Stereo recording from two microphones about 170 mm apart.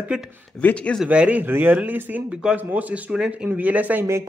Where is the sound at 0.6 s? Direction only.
5° left (ahead or behind).